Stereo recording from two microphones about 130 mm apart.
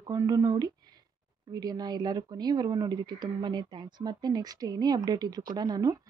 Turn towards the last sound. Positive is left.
turn(degrees=-30)  # may be behind; listen again after turning